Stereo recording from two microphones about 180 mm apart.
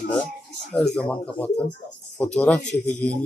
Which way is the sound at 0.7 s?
5° left (ahead or behind).